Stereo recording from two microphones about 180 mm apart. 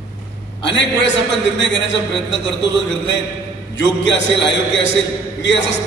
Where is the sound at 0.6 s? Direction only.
80° left.